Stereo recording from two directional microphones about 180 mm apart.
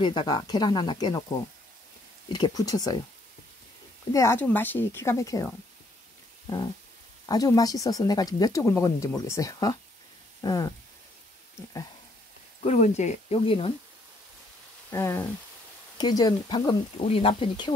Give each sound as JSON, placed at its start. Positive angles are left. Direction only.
{"t": 0.0, "sound": "speech", "side_deg": 25}
{"t": 2.3, "sound": "speech", "side_deg": 20}
{"t": 4.1, "sound": "speech", "side_deg": 15}
{"t": 7.2, "sound": "speech", "side_deg": 20}
{"t": 12.6, "sound": "speech", "side_deg": 40}
{"t": 14.9, "sound": "speech", "side_deg": 15}